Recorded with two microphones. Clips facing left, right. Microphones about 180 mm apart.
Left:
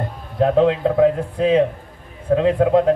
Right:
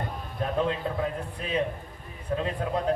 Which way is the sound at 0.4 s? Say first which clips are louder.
Left 12 dB; 85° left.